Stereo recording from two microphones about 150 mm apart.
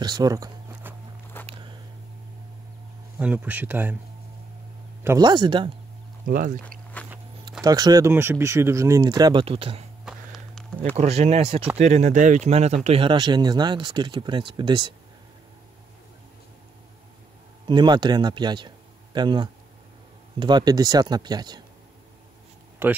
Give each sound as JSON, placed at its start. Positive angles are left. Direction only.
{"t": 0.0, "sound": "speech", "side_deg": -25}
{"t": 0.8, "sound": "walk", "side_deg": -15}
{"t": 1.5, "sound": "a sound", "side_deg": -35}
{"t": 3.2, "sound": "speech", "side_deg": -10}
{"t": 5.0, "sound": "speech", "side_deg": -25}
{"t": 6.2, "sound": "speech", "side_deg": -65}
{"t": 7.6, "sound": "speech", "side_deg": -25}
{"t": 10.0, "sound": "walk", "side_deg": 0}
{"t": 11.0, "sound": "speech", "side_deg": -45}
{"t": 17.6, "sound": "speech", "side_deg": -30}
{"t": 22.8, "sound": "speech", "side_deg": -15}